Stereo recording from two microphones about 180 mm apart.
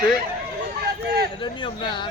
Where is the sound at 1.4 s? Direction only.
25° left (ahead or behind).